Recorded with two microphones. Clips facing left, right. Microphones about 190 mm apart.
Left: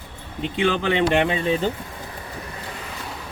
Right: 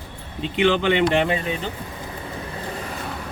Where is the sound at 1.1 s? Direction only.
30° left (ahead or behind).